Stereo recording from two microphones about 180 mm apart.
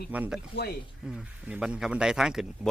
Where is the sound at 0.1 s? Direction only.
10° right (ahead or behind).